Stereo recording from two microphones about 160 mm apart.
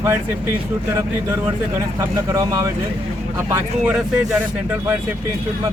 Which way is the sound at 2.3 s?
20° right (ahead or behind).